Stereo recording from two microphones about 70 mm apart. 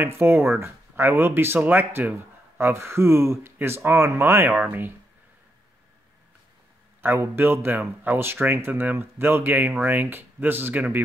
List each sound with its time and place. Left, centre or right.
0.0 s speech: right
7.0 s speech: right